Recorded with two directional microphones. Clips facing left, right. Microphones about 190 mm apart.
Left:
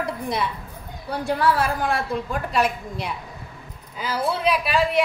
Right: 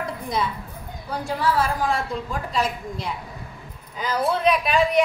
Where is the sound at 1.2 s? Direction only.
60° left (ahead or behind).